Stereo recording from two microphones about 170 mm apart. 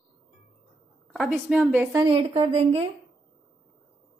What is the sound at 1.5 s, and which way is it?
Speech, 10° right (ahead or behind).